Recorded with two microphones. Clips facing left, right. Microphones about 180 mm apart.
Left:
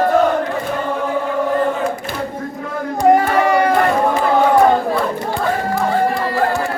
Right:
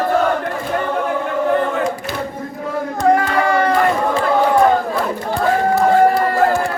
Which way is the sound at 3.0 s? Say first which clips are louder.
Left 3 dB; 20° left (ahead or behind).